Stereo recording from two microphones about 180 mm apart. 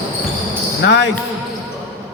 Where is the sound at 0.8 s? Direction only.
85° left.